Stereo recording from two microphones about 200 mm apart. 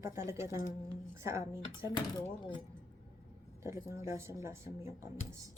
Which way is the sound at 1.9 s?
25° left (ahead or behind).